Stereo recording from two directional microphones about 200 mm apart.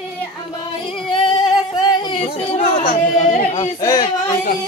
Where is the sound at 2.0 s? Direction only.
30° left (ahead or behind).